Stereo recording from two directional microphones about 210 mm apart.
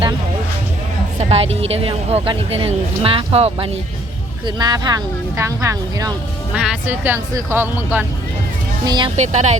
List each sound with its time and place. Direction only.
1.2 s a woman's voice: 30° right (ahead or behind)
6.5 s speech: 5° right (ahead or behind)
8.8 s speech: 20° right (ahead or behind)